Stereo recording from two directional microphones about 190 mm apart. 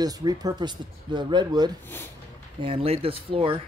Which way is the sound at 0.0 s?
20° right (ahead or behind).